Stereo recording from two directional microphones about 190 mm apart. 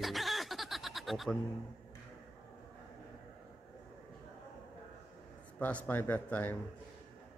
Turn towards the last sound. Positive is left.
turn(degrees=10)  # may be behind; listen again after turning